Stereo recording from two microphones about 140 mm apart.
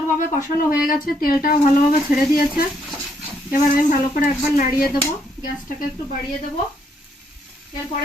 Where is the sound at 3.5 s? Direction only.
90° left.